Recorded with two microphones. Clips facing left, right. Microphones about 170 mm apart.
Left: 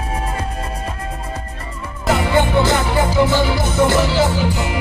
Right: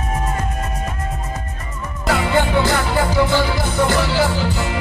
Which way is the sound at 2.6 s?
20° left (ahead or behind).